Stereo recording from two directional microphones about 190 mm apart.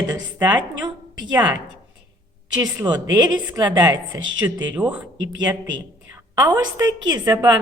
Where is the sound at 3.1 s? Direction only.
20° right (ahead or behind).